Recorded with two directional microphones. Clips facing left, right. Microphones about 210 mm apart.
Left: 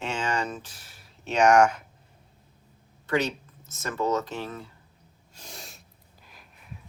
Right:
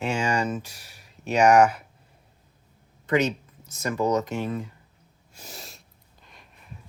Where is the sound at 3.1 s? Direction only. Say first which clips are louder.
Right 3 dB; 20° right (ahead or behind).